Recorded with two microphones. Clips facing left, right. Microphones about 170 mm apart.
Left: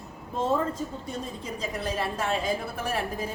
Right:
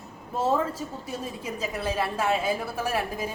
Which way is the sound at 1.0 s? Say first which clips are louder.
Right 1 dB; 5° right (ahead or behind).